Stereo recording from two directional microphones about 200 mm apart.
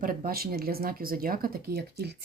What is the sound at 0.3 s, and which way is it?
Speech, 50° right (ahead or behind).